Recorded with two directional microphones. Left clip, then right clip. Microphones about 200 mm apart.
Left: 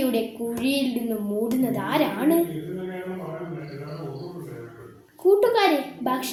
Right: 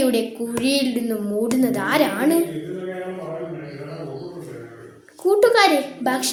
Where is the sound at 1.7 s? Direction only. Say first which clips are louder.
Right 4 dB; 5° right (ahead or behind).